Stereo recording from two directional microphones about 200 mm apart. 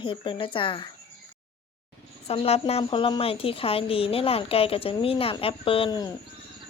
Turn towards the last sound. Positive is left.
turn(degrees=25)  # may be behind; listen again after turning